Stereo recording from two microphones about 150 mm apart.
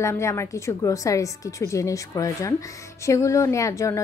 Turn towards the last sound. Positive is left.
turn(degrees=20)  # may be behind; listen again after turning